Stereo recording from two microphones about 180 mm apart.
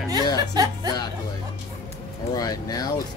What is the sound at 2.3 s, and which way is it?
Speech, 20° left (ahead or behind).